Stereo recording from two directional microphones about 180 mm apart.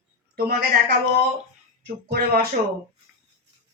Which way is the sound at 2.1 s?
65° right (ahead or behind).